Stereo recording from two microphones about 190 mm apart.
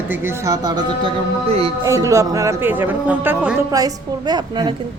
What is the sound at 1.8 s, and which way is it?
Speech, 15° right (ahead or behind).